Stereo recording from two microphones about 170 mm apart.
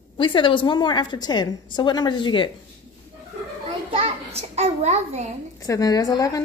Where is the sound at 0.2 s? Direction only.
30° left (ahead or behind).